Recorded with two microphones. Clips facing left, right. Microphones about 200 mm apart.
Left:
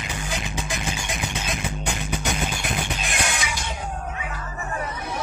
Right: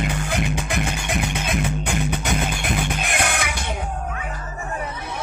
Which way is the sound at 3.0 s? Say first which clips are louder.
Right 4 dB; 60° right (ahead or behind).